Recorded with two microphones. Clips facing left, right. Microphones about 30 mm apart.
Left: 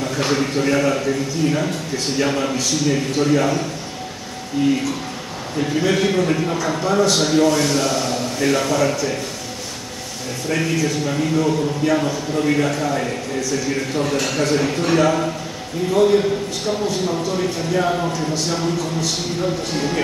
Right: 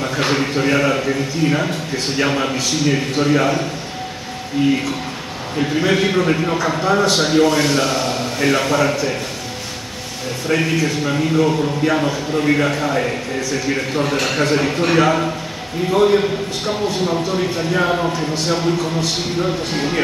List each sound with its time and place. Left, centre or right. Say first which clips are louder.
0.0 s a man's voice: right 2 dB; right
10.5 s a man's voice: right 2 dB; centre